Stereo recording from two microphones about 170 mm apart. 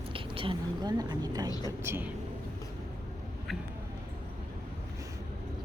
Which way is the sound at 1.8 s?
15° right (ahead or behind).